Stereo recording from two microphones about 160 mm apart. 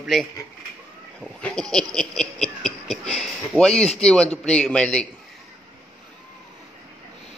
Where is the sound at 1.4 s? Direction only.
5° left (ahead or behind).